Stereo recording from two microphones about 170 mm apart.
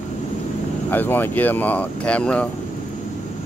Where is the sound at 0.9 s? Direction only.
10° left (ahead or behind).